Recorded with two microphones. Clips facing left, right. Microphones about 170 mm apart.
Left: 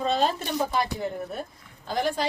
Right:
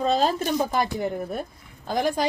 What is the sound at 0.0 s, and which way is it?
Speech, 40° right (ahead or behind).